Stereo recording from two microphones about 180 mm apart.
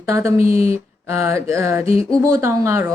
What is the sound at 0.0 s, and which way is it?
Speech, 15° right (ahead or behind).